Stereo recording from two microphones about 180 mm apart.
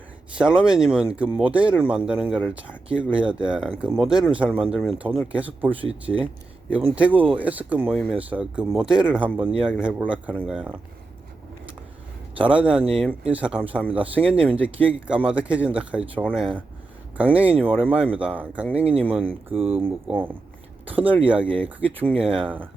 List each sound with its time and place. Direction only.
0.3 s speech: 5° right (ahead or behind)
12.4 s speech: 5° right (ahead or behind)
19.5 s speech: 30° right (ahead or behind)
19.8 s speech: 10° right (ahead or behind)